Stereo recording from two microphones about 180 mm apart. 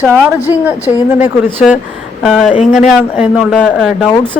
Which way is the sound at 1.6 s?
Centre (ahead or behind).